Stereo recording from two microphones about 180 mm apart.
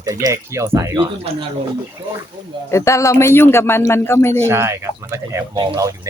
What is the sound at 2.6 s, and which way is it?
Speech, 15° left (ahead or behind).